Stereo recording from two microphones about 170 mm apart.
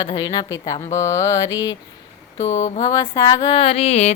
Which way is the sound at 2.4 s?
40° left (ahead or behind).